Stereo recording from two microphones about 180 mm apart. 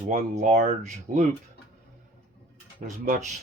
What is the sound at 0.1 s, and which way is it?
Speech, 45° right (ahead or behind).